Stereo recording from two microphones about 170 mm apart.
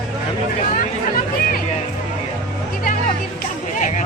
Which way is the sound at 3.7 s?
45° left (ahead or behind).